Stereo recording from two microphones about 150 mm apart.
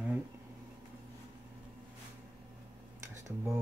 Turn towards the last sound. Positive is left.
turn(degrees=-20)  # may be behind; listen again after turning